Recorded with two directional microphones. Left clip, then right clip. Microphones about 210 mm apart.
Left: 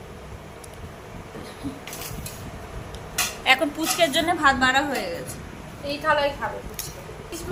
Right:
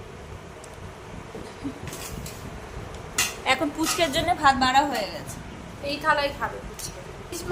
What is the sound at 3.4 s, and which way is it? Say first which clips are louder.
A woman's voice: left 5 dB; 5° right (ahead or behind).